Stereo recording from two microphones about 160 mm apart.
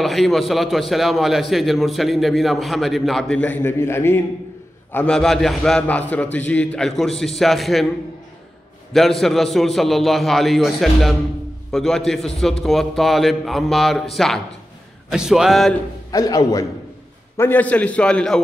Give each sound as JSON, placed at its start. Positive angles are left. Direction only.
{"t": 0.0, "sound": "a man's voice", "side_deg": 0}
{"t": 4.9, "sound": "a man's voice", "side_deg": 5}
{"t": 9.2, "sound": "a man's voice", "side_deg": 0}
{"t": 16.1, "sound": "a man's voice", "side_deg": 20}
{"t": 17.4, "sound": "a man's voice", "side_deg": 10}